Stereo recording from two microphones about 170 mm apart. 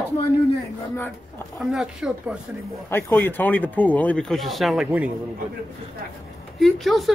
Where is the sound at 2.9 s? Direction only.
15° left (ahead or behind); by 5.1 s 5° right (ahead or behind).